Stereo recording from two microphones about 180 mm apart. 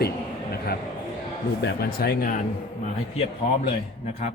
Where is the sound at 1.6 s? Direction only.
65° left (ahead or behind).